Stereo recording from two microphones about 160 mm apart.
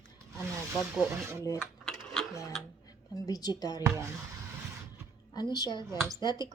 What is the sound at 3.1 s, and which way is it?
Speech, 25° left (ahead or behind).